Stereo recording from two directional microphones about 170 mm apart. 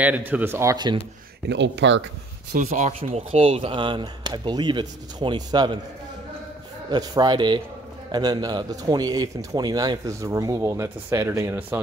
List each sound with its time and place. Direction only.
0.0 s speech: 10° right (ahead or behind)
1.5 s speech: 90° right
2.5 s a man's voice: 45° right (ahead or behind); by 5.8 s 25° right (ahead or behind)
6.9 s a man's voice: 25° right (ahead or behind)